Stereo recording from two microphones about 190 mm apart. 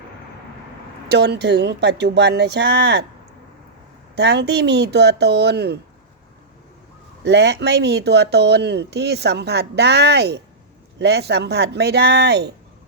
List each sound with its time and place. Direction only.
1.1 s speech: 60° right (ahead or behind)
4.1 s speech: 65° right (ahead or behind)
7.3 s speech: 65° right (ahead or behind)